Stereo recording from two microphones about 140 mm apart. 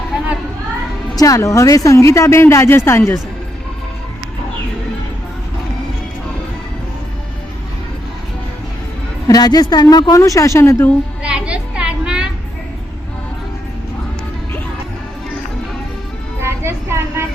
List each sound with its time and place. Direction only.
1.1 s speech: 25° left (ahead or behind)
9.2 s speech: 25° left (ahead or behind)
11.2 s a sound: 10° right (ahead or behind)
16.4 s music: 20° right (ahead or behind)